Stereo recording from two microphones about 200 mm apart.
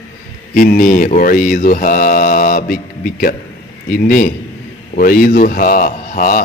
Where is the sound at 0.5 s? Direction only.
45° left (ahead or behind).